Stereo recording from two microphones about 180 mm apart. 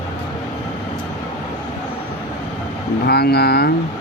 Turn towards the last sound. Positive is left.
turn(degrees=65)  # may be behind; listen again after turning